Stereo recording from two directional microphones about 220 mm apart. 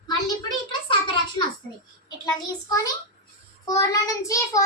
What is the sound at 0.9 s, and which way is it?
Speech, 20° left (ahead or behind).